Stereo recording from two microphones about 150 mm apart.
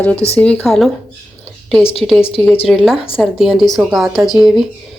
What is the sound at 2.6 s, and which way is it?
Speech, 5° right (ahead or behind).